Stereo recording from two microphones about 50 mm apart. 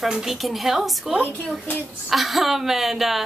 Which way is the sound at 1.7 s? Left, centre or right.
Left.